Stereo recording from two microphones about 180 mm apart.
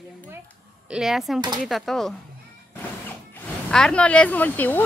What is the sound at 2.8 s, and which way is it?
Vehicle, 10° left (ahead or behind).